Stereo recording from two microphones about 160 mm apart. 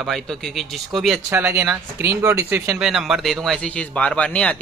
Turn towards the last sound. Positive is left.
turn(degrees=5)  # may be behind; listen again after turning